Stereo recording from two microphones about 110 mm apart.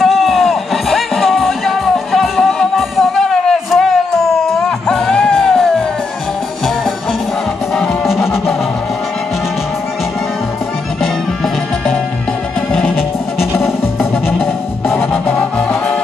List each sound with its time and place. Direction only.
0.0 s music: centre (ahead or behind)
7.7 s music: centre (ahead or behind)
11.0 s music: centre (ahead or behind)
14.4 s music: 20° left (ahead or behind)
15.3 s music: 5° left (ahead or behind)